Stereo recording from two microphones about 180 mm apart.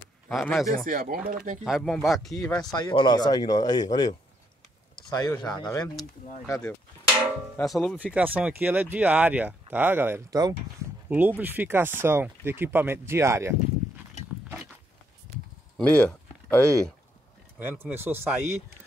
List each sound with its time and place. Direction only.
0.3 s speech: centre (ahead or behind)
0.8 s speech: 50° right (ahead or behind)
1.6 s speech: centre (ahead or behind)
2.4 s speech: 20° left (ahead or behind)
5.1 s speech: 20° left (ahead or behind)
7.6 s speech: centre (ahead or behind)
8.0 s speech: 10° right (ahead or behind)
15.8 s speech: 5° left (ahead or behind)
17.6 s speech: 10° right (ahead or behind)